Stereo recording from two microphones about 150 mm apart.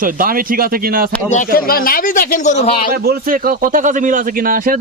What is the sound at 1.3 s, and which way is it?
A man's voice, 70° left (ahead or behind).